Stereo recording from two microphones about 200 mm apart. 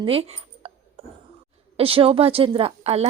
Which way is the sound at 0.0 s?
30° right (ahead or behind).